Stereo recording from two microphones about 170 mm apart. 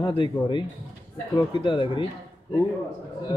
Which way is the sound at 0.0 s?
30° left (ahead or behind).